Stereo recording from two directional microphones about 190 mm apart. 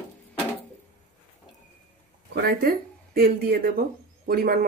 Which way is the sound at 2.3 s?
55° right (ahead or behind).